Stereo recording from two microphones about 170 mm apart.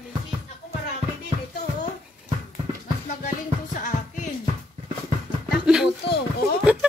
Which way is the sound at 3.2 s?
45° left (ahead or behind).